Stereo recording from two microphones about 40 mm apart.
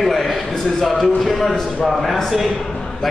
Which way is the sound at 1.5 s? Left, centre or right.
Centre.